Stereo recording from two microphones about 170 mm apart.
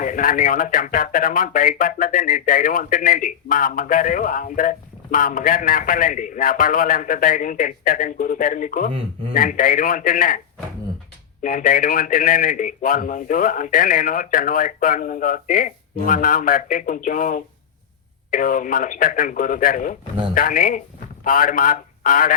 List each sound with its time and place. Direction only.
0.0 s speech: 50° left (ahead or behind)
8.9 s speech: 35° right (ahead or behind)
9.3 s speech: 50° left (ahead or behind)
11.4 s speech: 50° left (ahead or behind)